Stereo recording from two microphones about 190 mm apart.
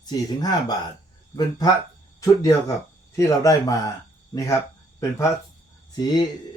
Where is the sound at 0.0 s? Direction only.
20° left (ahead or behind).